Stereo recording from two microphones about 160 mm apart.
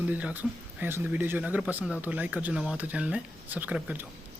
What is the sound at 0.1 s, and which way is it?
Speech, 10° right (ahead or behind).